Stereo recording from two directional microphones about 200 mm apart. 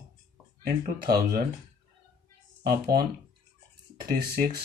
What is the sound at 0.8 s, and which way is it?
Speech, 45° right (ahead or behind).